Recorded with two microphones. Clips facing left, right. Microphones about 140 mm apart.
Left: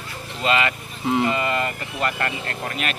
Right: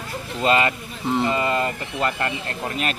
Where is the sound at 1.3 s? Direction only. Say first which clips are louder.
Right 2 dB; 25° right (ahead or behind).